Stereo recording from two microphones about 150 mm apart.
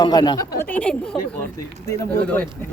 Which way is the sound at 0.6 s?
10° left (ahead or behind).